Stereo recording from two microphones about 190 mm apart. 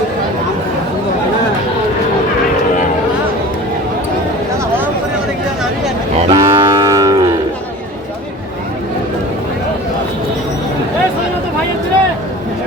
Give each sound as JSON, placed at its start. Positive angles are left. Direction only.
{"t": 6.2, "sound": "moo", "side_deg": -25}